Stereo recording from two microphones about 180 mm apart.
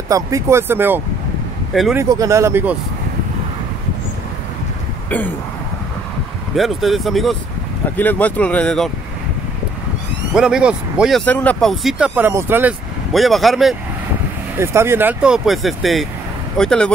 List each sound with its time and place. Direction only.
0.1 s speech: 15° right (ahead or behind)
1.7 s speech: centre (ahead or behind)
2.0 s speech: 20° right (ahead or behind)
6.5 s speech: centre (ahead or behind)
10.3 s speech: 5° right (ahead or behind)
13.1 s speech: centre (ahead or behind)
14.6 s speech: 15° right (ahead or behind); by 16.9 s 5° left (ahead or behind)